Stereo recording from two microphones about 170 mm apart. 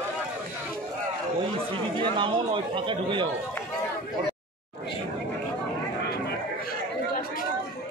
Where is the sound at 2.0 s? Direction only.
30° right (ahead or behind).